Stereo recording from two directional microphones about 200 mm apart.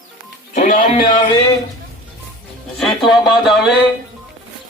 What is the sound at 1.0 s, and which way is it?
Speech, 20° left (ahead or behind).